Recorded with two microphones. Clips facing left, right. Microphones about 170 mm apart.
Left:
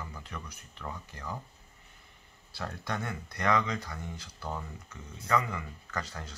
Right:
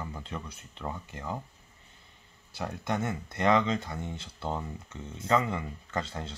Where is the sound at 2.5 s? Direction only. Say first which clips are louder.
Right 4 dB; 20° right (ahead or behind).